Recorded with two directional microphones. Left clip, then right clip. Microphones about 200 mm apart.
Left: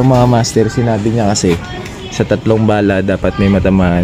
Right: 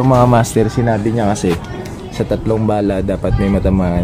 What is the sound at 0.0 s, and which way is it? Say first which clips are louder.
Speech: even; 15° left (ahead or behind).